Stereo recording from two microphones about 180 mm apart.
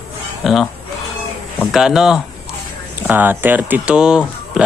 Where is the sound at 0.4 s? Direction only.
Centre (ahead or behind).